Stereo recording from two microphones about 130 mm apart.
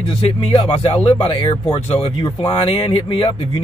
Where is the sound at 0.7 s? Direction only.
45° left (ahead or behind).